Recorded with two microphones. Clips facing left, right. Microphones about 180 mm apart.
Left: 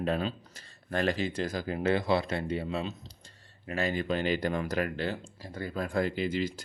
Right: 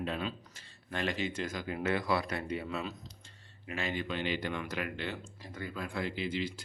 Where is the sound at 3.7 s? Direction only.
40° left (ahead or behind).